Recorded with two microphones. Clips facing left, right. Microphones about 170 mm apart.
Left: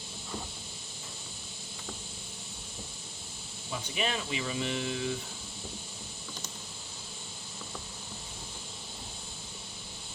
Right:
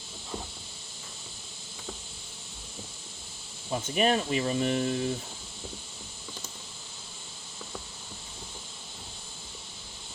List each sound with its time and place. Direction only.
3.7 s speech: 45° right (ahead or behind)